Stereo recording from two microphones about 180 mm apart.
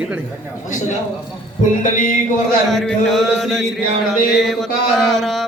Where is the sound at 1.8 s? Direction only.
45° left (ahead or behind).